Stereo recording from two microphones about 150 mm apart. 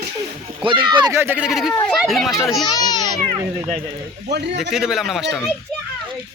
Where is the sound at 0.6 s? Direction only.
35° right (ahead or behind).